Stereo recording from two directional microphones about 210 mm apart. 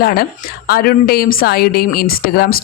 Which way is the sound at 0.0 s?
45° left (ahead or behind).